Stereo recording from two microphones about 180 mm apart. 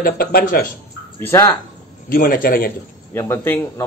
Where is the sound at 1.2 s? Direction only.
15° left (ahead or behind).